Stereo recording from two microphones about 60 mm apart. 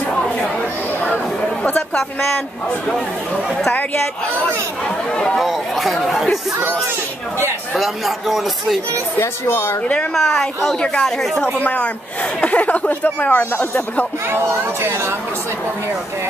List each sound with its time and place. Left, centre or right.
0.1 s a sound: centre
1.8 s a sound: centre
3.7 s a woman's voice: left
4.8 s speech: centre
5.4 s speech: centre
7.7 s speech: centre
8.9 s a woman's voice: left
10.1 s a woman's voice: centre
11.6 s speech: left
14.3 s speech: right